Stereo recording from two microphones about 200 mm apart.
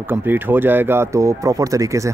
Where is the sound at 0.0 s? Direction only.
10° right (ahead or behind).